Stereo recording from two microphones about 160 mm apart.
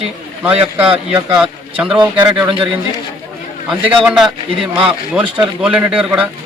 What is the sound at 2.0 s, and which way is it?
Speech, 30° right (ahead or behind).